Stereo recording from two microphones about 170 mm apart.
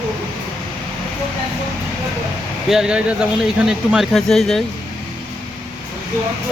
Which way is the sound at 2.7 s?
5° right (ahead or behind).